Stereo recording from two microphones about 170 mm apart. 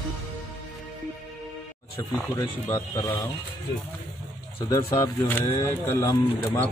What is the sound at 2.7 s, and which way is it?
Speech, 20° left (ahead or behind).